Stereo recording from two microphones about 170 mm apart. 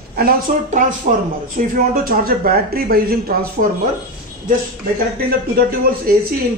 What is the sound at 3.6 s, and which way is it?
Speech, 50° right (ahead or behind).